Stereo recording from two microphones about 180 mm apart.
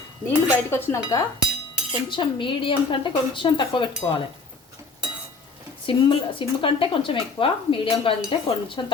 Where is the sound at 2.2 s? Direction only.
30° left (ahead or behind).